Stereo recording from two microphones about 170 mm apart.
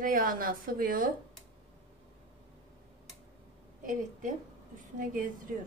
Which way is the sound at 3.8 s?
50° right (ahead or behind).